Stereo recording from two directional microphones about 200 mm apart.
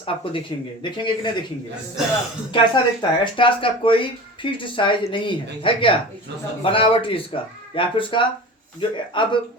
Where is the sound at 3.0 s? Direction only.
20° left (ahead or behind).